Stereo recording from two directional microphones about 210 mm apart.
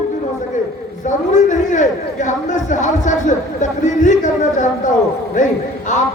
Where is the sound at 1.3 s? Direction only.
35° left (ahead or behind).